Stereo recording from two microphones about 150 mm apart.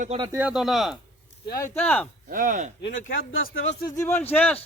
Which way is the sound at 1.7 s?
10° left (ahead or behind).